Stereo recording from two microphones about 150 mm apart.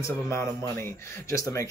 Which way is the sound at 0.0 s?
20° left (ahead or behind).